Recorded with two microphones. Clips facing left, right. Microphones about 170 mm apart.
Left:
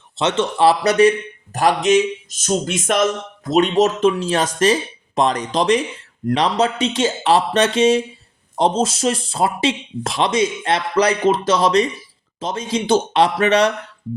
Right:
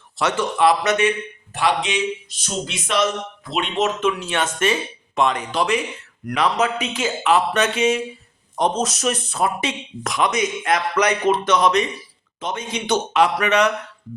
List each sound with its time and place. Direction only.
0.2 s speech: 25° left (ahead or behind)